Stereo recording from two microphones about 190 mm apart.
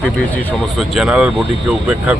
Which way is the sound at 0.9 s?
5° right (ahead or behind).